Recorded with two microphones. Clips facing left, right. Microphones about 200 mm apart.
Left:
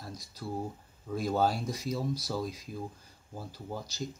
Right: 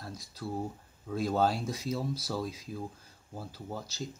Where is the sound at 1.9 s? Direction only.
15° left (ahead or behind).